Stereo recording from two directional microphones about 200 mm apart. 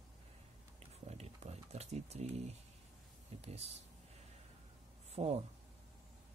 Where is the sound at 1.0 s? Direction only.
30° right (ahead or behind).